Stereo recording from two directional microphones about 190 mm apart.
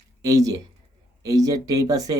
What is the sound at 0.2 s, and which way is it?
Speech, 20° right (ahead or behind).